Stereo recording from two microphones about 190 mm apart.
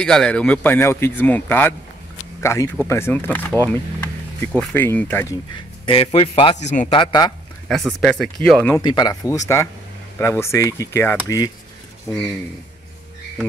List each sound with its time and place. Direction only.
0.0 s speech: 5° left (ahead or behind)
5.9 s a man's voice: 30° left (ahead or behind)
6.9 s speech: 25° left (ahead or behind)
7.6 s speech: centre (ahead or behind)
8.7 s speech: 20° left (ahead or behind)